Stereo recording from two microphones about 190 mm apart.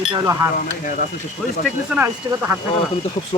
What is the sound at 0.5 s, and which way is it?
Speech, 45° left (ahead or behind).